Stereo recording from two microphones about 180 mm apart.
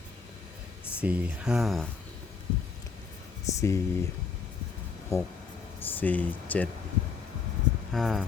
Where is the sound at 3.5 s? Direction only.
15° left (ahead or behind).